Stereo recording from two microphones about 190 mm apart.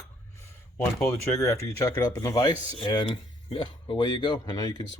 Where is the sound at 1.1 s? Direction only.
15° left (ahead or behind).